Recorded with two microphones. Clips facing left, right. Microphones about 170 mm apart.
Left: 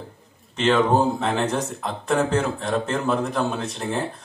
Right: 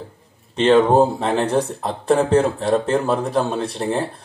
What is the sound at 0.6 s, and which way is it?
Speech, 30° right (ahead or behind).